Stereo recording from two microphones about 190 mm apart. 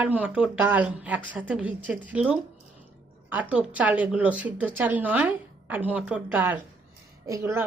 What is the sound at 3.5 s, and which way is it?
Speech, 5° right (ahead or behind).